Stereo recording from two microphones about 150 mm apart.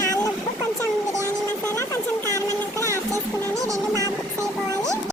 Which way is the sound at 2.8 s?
20° right (ahead or behind).